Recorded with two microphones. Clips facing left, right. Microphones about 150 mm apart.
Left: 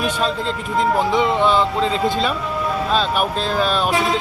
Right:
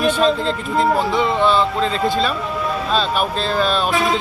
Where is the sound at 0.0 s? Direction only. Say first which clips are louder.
Right 5 dB; 10° left (ahead or behind).